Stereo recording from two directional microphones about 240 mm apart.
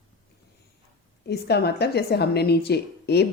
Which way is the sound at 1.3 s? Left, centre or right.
Left.